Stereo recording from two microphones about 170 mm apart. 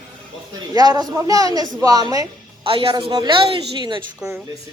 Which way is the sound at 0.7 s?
25° right (ahead or behind).